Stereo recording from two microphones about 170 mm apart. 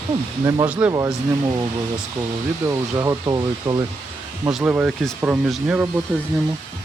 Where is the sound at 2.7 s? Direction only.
20° right (ahead or behind).